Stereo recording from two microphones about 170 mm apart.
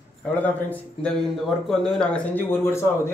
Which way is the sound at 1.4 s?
Centre (ahead or behind).